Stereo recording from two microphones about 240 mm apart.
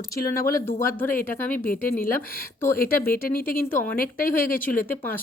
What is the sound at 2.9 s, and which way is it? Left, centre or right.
Speech, centre.